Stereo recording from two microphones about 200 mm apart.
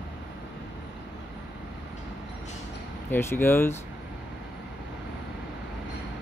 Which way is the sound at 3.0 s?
10° left (ahead or behind).